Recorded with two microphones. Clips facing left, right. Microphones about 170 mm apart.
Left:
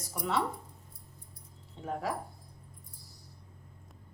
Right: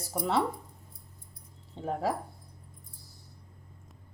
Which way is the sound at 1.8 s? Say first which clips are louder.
Right 5 dB; 30° right (ahead or behind).